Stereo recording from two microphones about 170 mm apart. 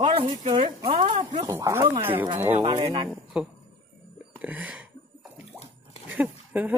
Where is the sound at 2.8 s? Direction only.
25° right (ahead or behind).